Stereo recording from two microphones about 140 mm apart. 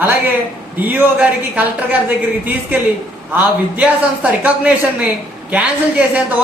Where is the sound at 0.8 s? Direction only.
10° right (ahead or behind).